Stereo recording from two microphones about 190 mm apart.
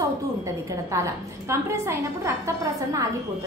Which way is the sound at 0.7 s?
15° right (ahead or behind).